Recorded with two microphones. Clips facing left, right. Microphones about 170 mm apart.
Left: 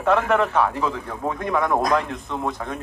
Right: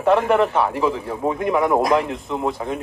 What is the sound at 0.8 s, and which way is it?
A man's voice, 15° right (ahead or behind).